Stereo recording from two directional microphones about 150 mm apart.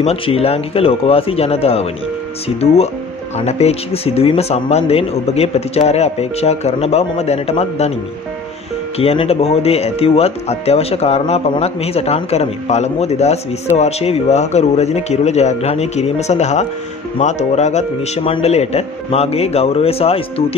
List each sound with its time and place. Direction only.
0.0 s speech: 40° left (ahead or behind)
8.9 s speech: 40° left (ahead or behind)